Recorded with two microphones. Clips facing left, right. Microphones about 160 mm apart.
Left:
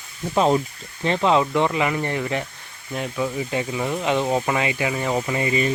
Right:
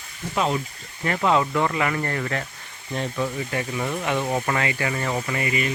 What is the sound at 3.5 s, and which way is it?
Speech, 20° left (ahead or behind).